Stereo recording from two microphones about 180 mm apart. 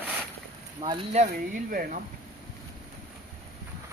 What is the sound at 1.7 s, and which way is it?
Speech, 55° right (ahead or behind).